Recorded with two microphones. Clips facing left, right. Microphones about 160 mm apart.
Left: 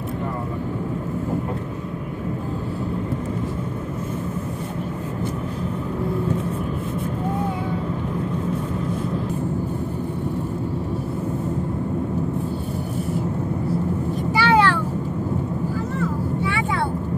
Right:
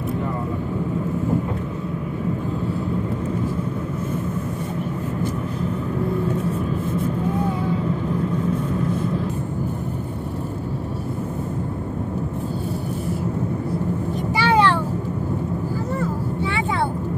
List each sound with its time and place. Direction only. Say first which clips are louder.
14.3 s vehicle: even; 20° right (ahead or behind)